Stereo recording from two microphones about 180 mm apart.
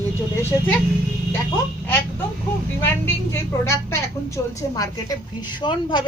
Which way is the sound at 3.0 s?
15° left (ahead or behind).